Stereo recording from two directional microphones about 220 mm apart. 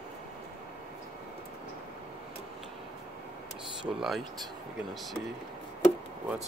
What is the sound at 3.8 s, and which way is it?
Speech, centre (ahead or behind).